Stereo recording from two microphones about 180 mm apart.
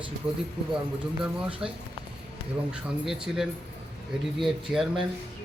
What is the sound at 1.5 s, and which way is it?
Speech, 30° right (ahead or behind).